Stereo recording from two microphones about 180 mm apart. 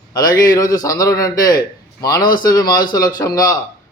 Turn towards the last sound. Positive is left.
turn(degrees=20)  # may be behind; listen again after turning